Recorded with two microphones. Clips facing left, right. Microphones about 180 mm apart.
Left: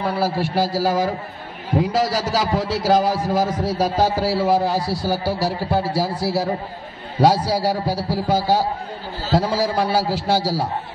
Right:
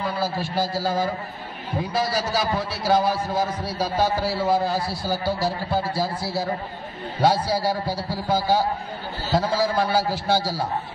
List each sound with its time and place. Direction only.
0.0 s a man's voice: 70° left (ahead or behind)
7.2 s a man's voice: 90° left